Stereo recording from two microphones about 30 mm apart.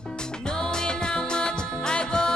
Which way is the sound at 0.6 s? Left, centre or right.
Left.